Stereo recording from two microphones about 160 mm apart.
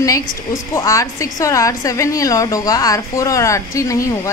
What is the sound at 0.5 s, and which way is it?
A woman's voice, 20° left (ahead or behind).